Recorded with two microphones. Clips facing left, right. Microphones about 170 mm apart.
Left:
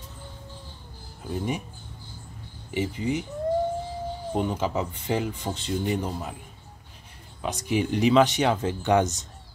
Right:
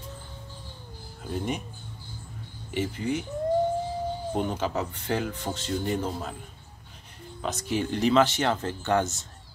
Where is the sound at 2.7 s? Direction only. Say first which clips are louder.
Left 1 dB; 5° left (ahead or behind).